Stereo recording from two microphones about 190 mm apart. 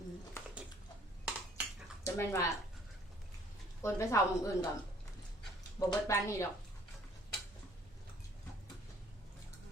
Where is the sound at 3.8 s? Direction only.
15° left (ahead or behind).